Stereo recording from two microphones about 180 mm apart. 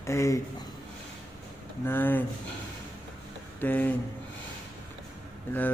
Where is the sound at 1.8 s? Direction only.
10° left (ahead or behind).